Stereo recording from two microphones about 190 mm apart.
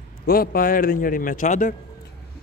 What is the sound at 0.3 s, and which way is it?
A man's voice, 50° left (ahead or behind).